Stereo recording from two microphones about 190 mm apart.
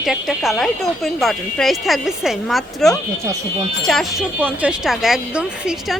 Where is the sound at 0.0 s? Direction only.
Centre (ahead or behind).